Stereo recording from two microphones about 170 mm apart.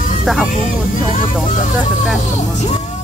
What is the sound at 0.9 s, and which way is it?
Speech, 50° left (ahead or behind).